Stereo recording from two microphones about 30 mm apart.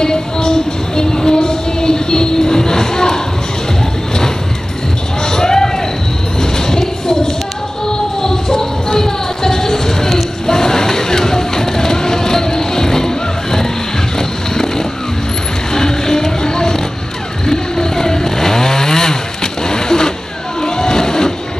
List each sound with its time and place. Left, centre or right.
0.0 s music: left
5.3 s a sound: centre
8.9 s music: centre
14.1 s vehicle: centre
15.7 s music: centre
17.5 s chainsaw: centre
20.6 s vehicle: left